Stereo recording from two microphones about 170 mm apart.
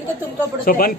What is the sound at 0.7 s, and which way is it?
Speech, 55° left (ahead or behind).